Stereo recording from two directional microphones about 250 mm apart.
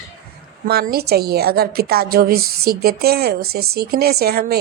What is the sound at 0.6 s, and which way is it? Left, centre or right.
A woman's voice, right.